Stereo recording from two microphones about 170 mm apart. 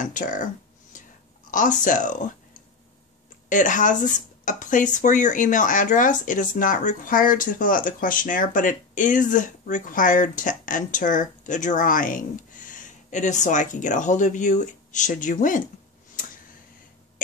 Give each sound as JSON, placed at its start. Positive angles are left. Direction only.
{"t": 0.0, "sound": "speech", "side_deg": 50}
{"t": 1.5, "sound": "speech", "side_deg": 50}
{"t": 3.4, "sound": "speech", "side_deg": 50}